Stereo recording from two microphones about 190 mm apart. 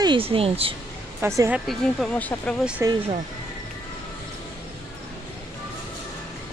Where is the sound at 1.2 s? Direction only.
15° right (ahead or behind).